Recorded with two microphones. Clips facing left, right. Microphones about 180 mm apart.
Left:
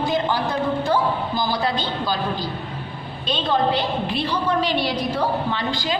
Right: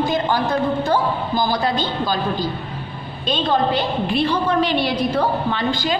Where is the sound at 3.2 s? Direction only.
45° right (ahead or behind).